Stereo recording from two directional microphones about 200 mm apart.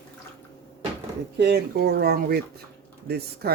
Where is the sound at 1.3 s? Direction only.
55° right (ahead or behind).